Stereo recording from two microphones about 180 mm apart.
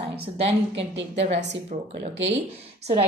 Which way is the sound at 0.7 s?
80° right.